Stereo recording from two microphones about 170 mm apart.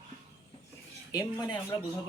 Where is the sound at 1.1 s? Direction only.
20° left (ahead or behind).